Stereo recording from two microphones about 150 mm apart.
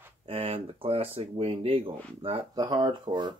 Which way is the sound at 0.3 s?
40° right (ahead or behind).